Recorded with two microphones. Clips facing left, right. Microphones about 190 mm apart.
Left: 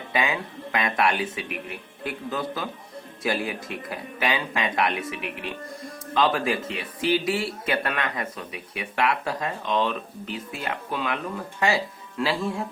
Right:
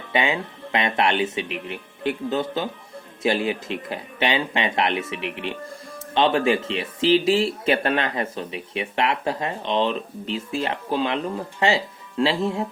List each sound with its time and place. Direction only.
0.1 s speech: 25° right (ahead or behind)